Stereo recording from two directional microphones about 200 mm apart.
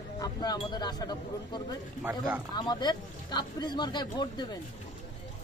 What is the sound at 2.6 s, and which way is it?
Speech, 20° left (ahead or behind).